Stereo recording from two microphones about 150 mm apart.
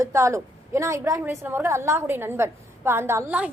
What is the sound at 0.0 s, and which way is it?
A woman's voice, 20° right (ahead or behind).